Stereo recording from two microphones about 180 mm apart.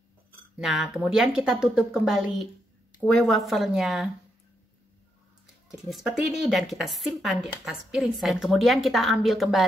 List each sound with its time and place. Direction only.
0.6 s a woman's voice: centre (ahead or behind)
5.9 s a woman's voice: centre (ahead or behind)